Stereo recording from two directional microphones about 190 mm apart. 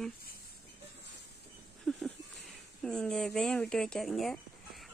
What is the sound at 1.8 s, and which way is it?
Speech, centre (ahead or behind).